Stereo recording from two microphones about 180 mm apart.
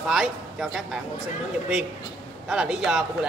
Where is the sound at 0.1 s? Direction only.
Centre (ahead or behind).